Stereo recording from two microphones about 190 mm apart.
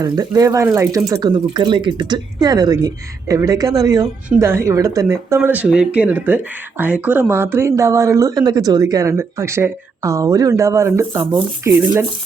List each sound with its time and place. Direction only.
0.0 s speech: 20° right (ahead or behind)